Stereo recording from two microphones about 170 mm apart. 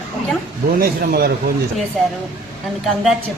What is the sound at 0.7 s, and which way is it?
Speech, 65° right (ahead or behind).